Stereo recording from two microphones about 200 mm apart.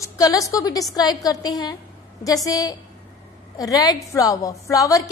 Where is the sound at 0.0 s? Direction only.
15° left (ahead or behind).